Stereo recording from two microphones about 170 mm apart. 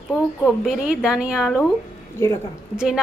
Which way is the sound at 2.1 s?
15° left (ahead or behind).